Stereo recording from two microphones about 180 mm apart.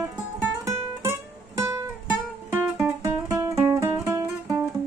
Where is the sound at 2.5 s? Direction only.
15° right (ahead or behind).